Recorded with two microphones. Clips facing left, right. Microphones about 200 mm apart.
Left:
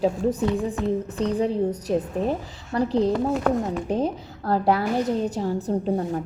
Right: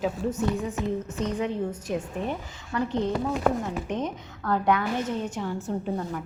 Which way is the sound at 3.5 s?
Centre (ahead or behind).